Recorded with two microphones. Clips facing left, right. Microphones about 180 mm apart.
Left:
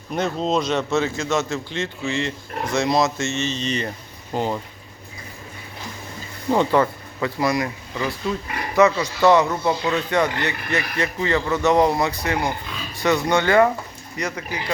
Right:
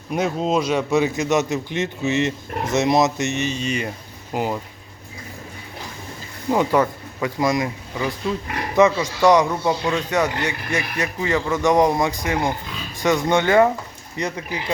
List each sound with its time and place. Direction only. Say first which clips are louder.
0.1 s a man's voice: right 1 dB; 10° right (ahead or behind)
6.5 s a man's voice: even; 10° right (ahead or behind); by 14.6 s 25° right (ahead or behind)